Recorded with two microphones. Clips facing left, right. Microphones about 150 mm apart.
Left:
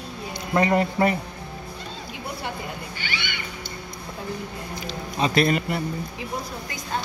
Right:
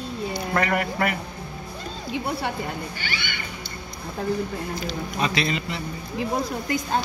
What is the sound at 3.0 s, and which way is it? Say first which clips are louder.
Music: even; 45° right (ahead or behind).